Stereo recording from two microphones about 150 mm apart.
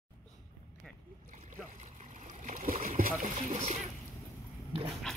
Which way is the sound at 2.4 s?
60° right (ahead or behind).